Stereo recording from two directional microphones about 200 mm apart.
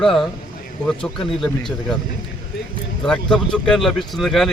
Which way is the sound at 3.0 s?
5° left (ahead or behind).